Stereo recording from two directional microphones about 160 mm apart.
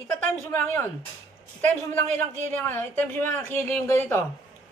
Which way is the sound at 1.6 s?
45° right (ahead or behind).